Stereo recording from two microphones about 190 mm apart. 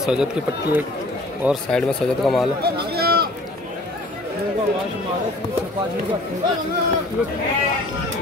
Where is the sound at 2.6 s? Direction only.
55° right (ahead or behind).